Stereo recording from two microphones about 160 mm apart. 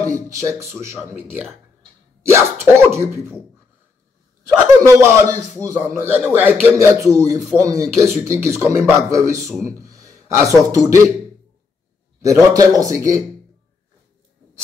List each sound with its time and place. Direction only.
0.0 s a man's voice: 20° right (ahead or behind)
2.6 s a man's voice: 15° right (ahead or behind)
4.5 s a man's voice: 20° right (ahead or behind)
12.2 s a man's voice: 20° right (ahead or behind)